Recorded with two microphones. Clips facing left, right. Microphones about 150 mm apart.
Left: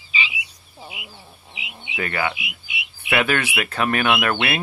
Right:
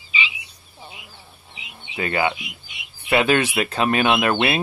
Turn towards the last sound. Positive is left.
turn(degrees=-20)  # may be behind; listen again after turning